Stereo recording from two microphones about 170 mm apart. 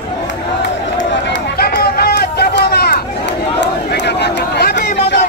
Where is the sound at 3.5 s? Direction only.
90° left.